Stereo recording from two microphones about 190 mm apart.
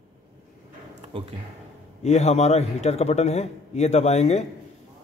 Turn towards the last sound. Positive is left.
turn(degrees=35)  # may be behind; listen again after turning